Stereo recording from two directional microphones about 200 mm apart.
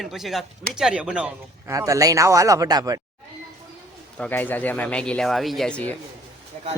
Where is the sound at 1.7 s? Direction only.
15° right (ahead or behind).